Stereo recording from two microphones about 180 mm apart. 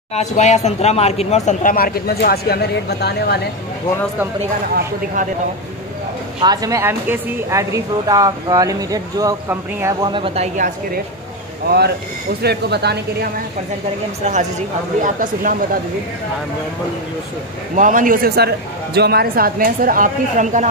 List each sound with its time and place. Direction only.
0.1 s speech: 40° left (ahead or behind); by 3.3 s 65° left (ahead or behind)
6.4 s speech: 20° right (ahead or behind)
10.0 s speech: 30° right (ahead or behind)
12.4 s a woman's voice: 65° right (ahead or behind)
14.2 s speech: 40° right (ahead or behind)
17.7 s speech: 50° right (ahead or behind)